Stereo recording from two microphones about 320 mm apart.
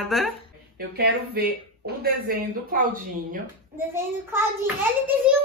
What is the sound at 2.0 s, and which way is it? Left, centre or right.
Speech, right.